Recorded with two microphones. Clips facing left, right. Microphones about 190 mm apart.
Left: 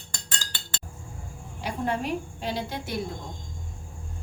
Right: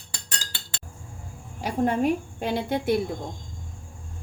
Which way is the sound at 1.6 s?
50° right (ahead or behind).